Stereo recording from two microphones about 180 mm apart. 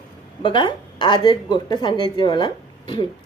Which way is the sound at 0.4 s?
25° left (ahead or behind).